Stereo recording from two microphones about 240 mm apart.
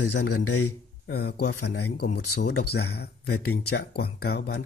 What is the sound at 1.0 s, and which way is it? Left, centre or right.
Speech, left.